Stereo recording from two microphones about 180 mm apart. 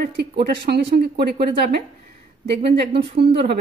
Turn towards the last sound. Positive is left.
turn(degrees=-65)  # may be behind; listen again after turning